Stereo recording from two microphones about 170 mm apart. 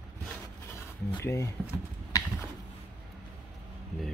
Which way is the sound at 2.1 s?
20° left (ahead or behind).